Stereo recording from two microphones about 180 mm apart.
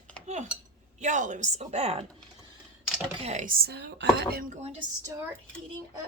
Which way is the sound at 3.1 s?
35° right (ahead or behind).